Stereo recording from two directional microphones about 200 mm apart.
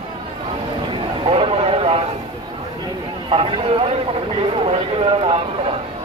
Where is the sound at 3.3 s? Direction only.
25° right (ahead or behind).